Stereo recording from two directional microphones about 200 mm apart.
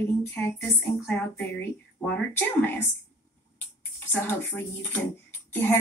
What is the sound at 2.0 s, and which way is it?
Speech, 10° left (ahead or behind).